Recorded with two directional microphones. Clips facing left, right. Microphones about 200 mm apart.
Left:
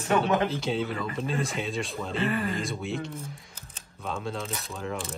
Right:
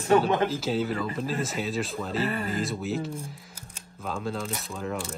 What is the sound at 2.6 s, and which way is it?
Speech, centre (ahead or behind).